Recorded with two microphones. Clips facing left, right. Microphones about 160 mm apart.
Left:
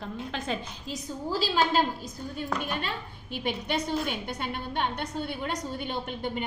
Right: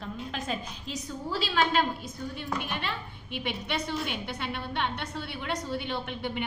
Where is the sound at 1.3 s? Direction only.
35° left (ahead or behind).